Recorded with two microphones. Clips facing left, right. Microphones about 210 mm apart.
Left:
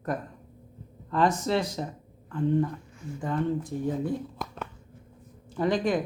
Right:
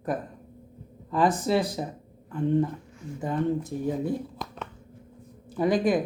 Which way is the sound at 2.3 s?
20° right (ahead or behind).